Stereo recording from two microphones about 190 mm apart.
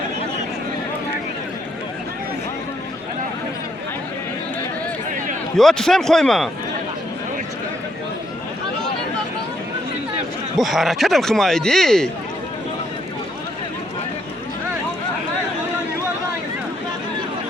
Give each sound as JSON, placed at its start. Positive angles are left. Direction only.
{"t": 5.5, "sound": "speech", "side_deg": 0}
{"t": 10.6, "sound": "speech", "side_deg": 0}